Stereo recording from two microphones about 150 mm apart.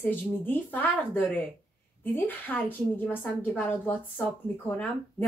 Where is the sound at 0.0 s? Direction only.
15° left (ahead or behind).